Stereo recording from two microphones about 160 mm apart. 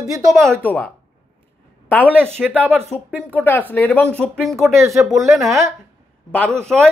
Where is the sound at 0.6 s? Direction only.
10° left (ahead or behind).